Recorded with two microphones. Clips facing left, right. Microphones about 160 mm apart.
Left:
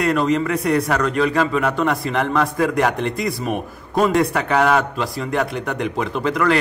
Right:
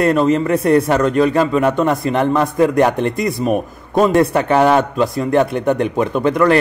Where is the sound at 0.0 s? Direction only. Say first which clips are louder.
Right 4 dB; 25° right (ahead or behind).